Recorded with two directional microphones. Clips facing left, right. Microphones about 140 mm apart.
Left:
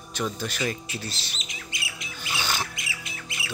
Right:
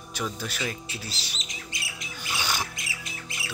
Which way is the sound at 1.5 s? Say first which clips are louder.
Left 1 dB; 40° right (ahead or behind).